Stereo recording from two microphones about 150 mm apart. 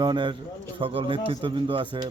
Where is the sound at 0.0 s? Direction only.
30° right (ahead or behind).